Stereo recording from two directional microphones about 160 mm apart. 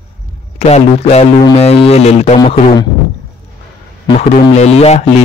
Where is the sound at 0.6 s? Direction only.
40° left (ahead or behind).